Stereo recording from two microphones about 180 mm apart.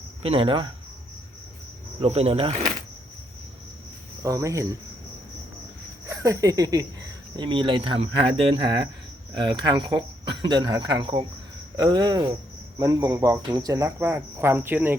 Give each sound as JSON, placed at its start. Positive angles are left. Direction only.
{"t": 0.2, "sound": "speech", "side_deg": -30}
{"t": 2.0, "sound": "speech", "side_deg": -35}
{"t": 4.2, "sound": "speech", "side_deg": -20}
{"t": 6.1, "sound": "speech", "side_deg": -20}